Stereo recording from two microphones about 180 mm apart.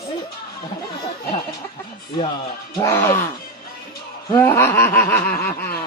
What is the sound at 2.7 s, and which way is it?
Snicker, 15° left (ahead or behind).